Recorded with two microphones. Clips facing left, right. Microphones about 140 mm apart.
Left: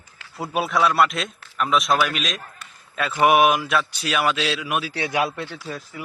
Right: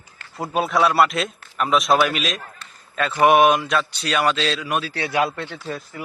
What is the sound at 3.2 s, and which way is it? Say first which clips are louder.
A man's voice: right 2 dB; 5° left (ahead or behind).